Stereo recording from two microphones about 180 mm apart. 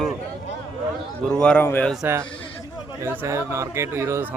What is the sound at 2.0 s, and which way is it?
Speech, 15° right (ahead or behind).